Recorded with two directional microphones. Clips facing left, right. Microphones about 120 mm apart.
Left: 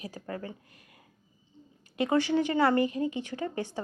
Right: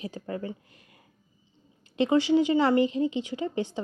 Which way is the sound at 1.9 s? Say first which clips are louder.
Right 4 dB; 20° right (ahead or behind).